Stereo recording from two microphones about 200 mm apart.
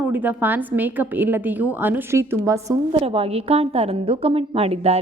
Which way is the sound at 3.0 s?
30° right (ahead or behind).